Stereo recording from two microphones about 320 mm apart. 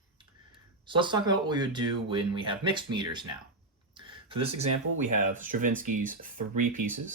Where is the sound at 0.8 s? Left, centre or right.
Centre.